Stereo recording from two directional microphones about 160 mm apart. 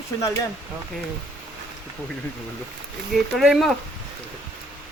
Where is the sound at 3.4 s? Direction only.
Centre (ahead or behind).